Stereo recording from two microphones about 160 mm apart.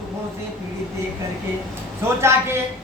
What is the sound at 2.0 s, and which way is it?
Speech, 15° right (ahead or behind).